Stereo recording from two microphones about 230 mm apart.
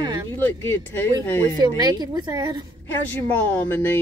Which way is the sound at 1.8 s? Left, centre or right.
Centre.